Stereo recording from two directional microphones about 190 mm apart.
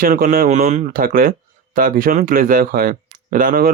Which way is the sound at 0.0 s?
45° right (ahead or behind).